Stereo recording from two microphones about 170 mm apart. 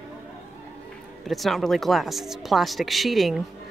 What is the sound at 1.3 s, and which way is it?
Speech, centre (ahead or behind).